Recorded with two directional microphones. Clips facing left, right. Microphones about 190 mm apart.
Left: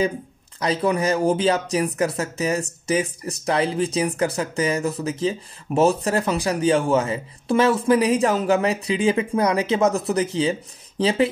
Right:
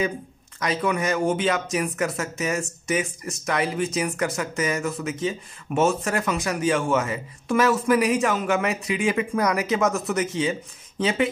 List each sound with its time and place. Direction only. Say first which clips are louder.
0.6 s speech: left 3 dB; 30° left (ahead or behind)